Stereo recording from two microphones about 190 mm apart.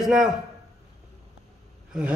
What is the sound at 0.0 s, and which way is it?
Speech, 5° right (ahead or behind).